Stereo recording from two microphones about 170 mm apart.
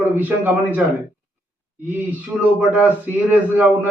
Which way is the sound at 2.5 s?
10° right (ahead or behind).